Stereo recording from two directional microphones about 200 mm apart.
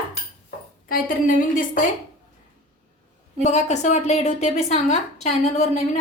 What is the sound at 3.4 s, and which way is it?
A woman's voice, 35° left (ahead or behind).